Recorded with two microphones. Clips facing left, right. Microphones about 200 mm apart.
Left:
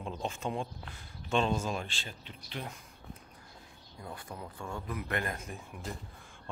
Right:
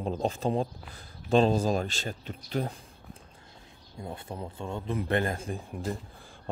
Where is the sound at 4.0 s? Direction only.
25° right (ahead or behind).